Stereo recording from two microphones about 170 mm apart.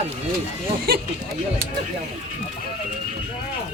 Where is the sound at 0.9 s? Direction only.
65° right (ahead or behind).